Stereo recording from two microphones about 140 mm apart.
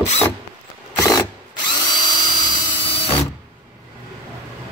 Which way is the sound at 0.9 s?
25° left (ahead or behind).